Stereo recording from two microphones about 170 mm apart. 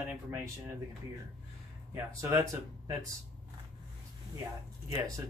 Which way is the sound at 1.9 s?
15° right (ahead or behind).